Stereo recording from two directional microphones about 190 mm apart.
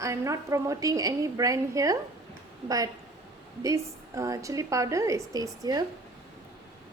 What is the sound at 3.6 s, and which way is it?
A woman's voice, 15° right (ahead or behind).